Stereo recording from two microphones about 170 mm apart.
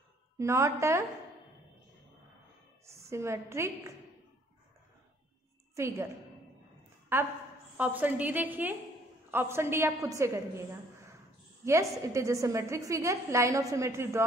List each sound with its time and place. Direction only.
0.4 s a woman's voice: 15° right (ahead or behind)
2.8 s a woman's voice: 15° right (ahead or behind)
5.8 s a woman's voice: 15° right (ahead or behind)
7.1 s a woman's voice: 15° right (ahead or behind)
11.6 s a woman's voice: 15° right (ahead or behind)